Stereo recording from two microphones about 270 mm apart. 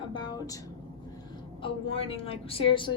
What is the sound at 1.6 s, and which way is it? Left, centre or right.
A woman's voice, left.